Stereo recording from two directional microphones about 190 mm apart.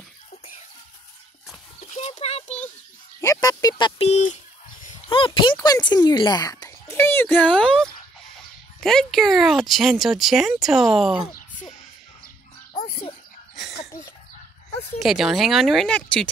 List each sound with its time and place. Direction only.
1.8 s a sound: 35° left (ahead or behind)
3.2 s a child's voice: 15° left (ahead or behind); by 11.2 s centre (ahead or behind)
15.0 s speech: centre (ahead or behind)